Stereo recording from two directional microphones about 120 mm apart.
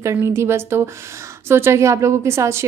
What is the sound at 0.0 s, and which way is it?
A woman's voice, 25° right (ahead or behind).